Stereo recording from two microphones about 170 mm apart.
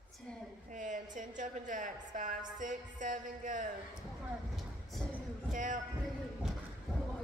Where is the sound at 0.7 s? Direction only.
45° right (ahead or behind).